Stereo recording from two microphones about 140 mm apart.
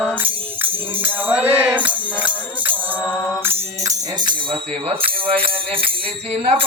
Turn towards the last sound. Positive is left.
turn(degrees=-45)  # may be behind; listen again after turning